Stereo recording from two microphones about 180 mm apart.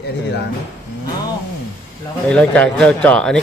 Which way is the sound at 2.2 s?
5° left (ahead or behind).